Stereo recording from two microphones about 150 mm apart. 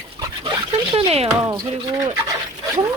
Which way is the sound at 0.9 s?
40° right (ahead or behind).